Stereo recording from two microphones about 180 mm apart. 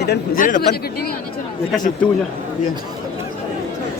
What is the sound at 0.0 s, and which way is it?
Speech, 65° left (ahead or behind).